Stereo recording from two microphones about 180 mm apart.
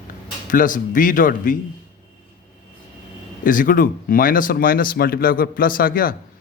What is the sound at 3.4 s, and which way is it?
Speech, 50° left (ahead or behind).